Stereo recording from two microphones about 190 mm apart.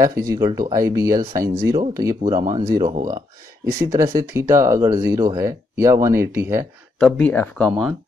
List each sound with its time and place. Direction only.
0.0 s speech: 15° right (ahead or behind)
7.0 s speech: 10° left (ahead or behind)